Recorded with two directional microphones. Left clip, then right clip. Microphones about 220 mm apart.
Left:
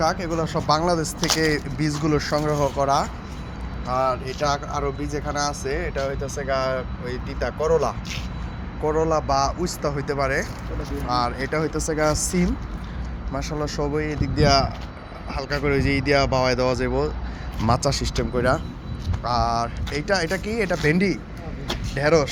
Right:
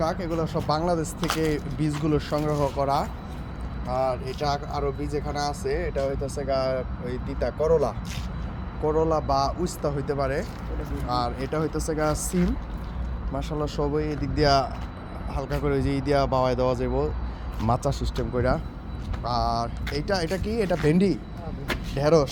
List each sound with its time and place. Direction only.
0.0 s speech: 5° left (ahead or behind)
20.8 s speech: 20° right (ahead or behind)